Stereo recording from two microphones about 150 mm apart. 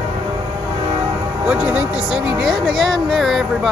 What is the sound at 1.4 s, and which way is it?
Speech, 10° right (ahead or behind).